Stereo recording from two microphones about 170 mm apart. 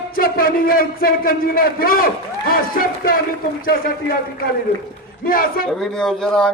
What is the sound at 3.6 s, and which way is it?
Speech, 60° left (ahead or behind).